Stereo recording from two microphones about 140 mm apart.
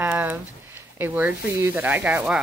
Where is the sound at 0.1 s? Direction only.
10° right (ahead or behind).